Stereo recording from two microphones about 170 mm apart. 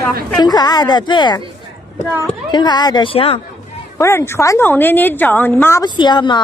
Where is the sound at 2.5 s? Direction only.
25° left (ahead or behind).